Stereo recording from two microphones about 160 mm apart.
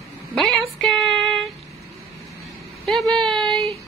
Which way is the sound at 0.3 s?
5° left (ahead or behind).